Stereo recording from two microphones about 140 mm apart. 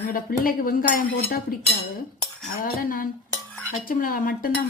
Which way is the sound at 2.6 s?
85° left.